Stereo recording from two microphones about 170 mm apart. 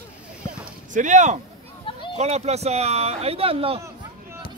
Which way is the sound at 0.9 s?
45° right (ahead or behind).